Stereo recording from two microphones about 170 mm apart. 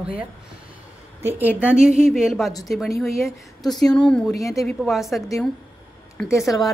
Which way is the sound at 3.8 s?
5° left (ahead or behind).